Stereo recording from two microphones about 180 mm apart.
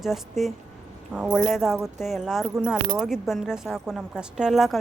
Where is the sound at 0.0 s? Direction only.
Centre (ahead or behind).